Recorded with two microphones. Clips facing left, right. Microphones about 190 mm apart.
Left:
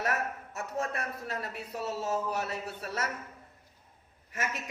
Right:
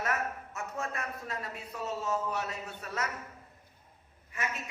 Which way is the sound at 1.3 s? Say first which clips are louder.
Left 3 dB; 35° left (ahead or behind).